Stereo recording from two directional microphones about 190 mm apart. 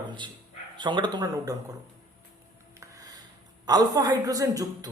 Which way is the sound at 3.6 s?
20° right (ahead or behind).